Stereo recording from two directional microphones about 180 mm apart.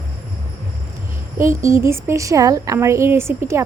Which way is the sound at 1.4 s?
15° right (ahead or behind).